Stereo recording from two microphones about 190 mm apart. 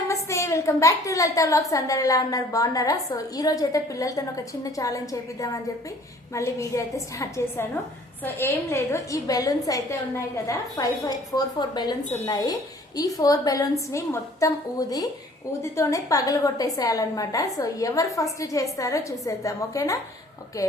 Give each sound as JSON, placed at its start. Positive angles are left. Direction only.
{"t": 0.1, "sound": "a woman's voice", "side_deg": 15}